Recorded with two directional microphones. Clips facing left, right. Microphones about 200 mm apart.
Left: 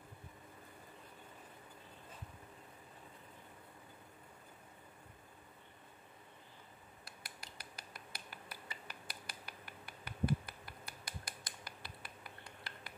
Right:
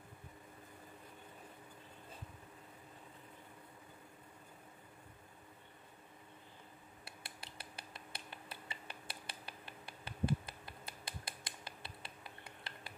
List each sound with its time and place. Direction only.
7.2 s finger snapping: 30° right (ahead or behind)